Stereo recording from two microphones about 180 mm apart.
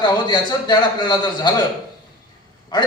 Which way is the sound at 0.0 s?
25° left (ahead or behind).